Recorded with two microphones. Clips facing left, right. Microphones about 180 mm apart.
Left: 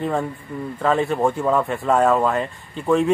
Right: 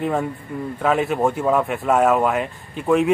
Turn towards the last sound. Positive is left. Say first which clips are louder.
# right 1 dB
turn(degrees=-5)  # may be behind; listen again after turning